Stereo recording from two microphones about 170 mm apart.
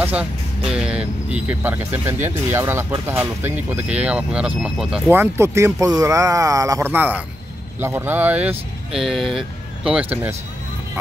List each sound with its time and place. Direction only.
0.0 s speech: 10° right (ahead or behind)